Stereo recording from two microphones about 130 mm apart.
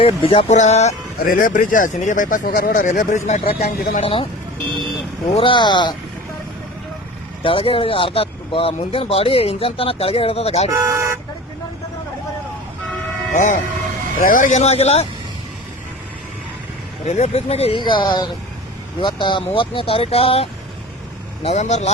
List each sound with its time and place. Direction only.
0.0 s speech: 45° left (ahead or behind)
0.4 s speech: 60° left (ahead or behind)
3.4 s speech: 50° left (ahead or behind)
5.4 s speech: 40° left (ahead or behind)
7.4 s speech: 45° left (ahead or behind)
10.7 s speech: 20° right (ahead or behind)
13.3 s speech: 75° left (ahead or behind)
14.2 s speech: 90° left; by 15.0 s 55° left (ahead or behind)
17.1 s speech: 55° left (ahead or behind)
21.4 s speech: 60° left (ahead or behind)